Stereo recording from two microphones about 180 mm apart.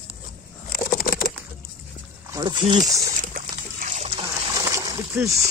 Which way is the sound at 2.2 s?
20° right (ahead or behind).